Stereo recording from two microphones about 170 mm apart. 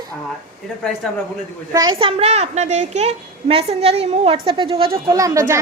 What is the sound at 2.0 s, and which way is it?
A woman's voice, 40° right (ahead or behind).